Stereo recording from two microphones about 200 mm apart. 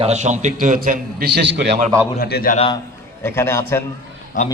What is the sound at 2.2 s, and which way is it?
Speech, 50° left (ahead or behind).